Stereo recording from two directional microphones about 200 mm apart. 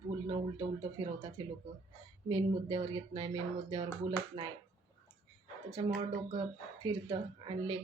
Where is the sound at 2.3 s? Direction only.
25° right (ahead or behind).